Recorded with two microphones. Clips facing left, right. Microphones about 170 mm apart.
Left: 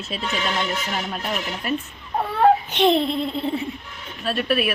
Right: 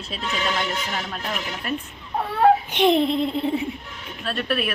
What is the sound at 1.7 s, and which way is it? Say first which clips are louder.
Speech: left 3 dB; 5° left (ahead or behind).